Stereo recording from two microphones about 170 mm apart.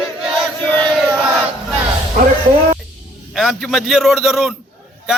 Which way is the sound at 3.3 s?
Centre (ahead or behind).